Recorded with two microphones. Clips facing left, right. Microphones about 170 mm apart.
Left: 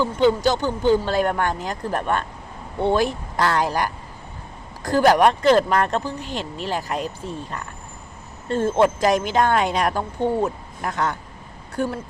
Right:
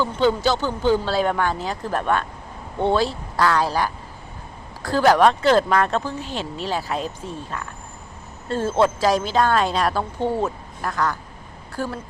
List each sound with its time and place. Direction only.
0.0 s speech: 15° left (ahead or behind)
8.5 s a woman's voice: 15° left (ahead or behind)